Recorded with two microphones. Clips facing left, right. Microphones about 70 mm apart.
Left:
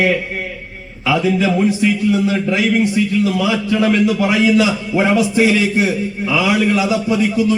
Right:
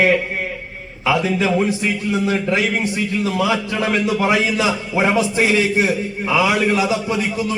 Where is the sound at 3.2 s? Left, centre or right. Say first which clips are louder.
Left 2 dB; right.